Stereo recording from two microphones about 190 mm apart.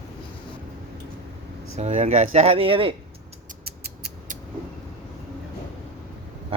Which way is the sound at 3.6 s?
55° right (ahead or behind).